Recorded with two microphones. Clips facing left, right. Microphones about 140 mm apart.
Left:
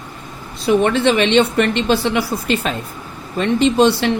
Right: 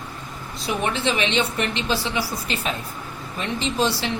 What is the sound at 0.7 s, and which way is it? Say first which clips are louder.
A woman's voice: left 10 dB; 80° left.